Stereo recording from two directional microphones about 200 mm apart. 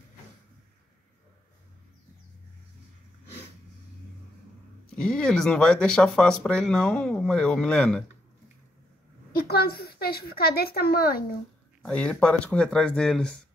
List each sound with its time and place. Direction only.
5.1 s speech: 5° left (ahead or behind)
9.5 s speech: 50° left (ahead or behind)
11.8 s speech: 5° left (ahead or behind)